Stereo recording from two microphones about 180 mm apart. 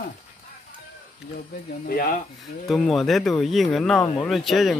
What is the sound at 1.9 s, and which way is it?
Speech, 55° left (ahead or behind).